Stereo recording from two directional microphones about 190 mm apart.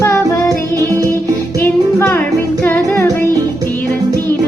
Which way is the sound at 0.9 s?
15° right (ahead or behind).